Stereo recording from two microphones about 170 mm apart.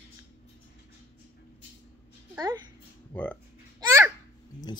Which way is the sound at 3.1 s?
10° left (ahead or behind).